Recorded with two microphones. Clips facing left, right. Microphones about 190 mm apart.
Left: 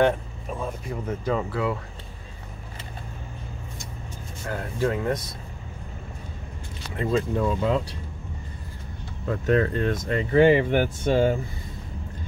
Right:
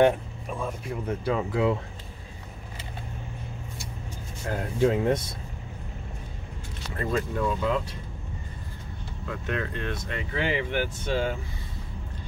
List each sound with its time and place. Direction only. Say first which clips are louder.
1.0 s speech: left 1 dB; 10° right (ahead or behind)
4.5 s speech: right 2 dB; 20° right (ahead or behind)
7.0 s speech: left 4 dB; 25° left (ahead or behind)
9.3 s speech: left 9 dB; 40° left (ahead or behind)